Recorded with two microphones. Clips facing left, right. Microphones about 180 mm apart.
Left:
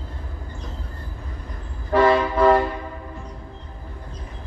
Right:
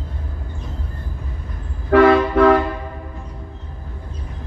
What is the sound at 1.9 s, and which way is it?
Vehicle, 70° right (ahead or behind).